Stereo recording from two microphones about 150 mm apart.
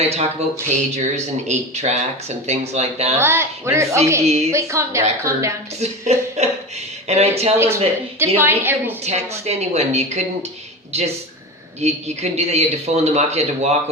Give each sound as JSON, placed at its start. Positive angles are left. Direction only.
{"t": 0.0, "sound": "speech", "side_deg": -45}
{"t": 3.2, "sound": "speech", "side_deg": -15}
{"t": 4.3, "sound": "speech", "side_deg": -45}
{"t": 4.5, "sound": "speech", "side_deg": -20}
{"t": 5.8, "sound": "speech", "side_deg": -45}
{"t": 8.4, "sound": "a woman's voice", "side_deg": -15}
{"t": 9.4, "sound": "speech", "side_deg": -45}